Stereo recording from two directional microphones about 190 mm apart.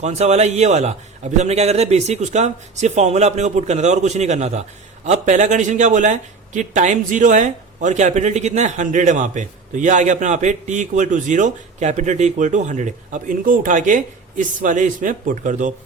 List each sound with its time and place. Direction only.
0.0 s speech: 35° right (ahead or behind)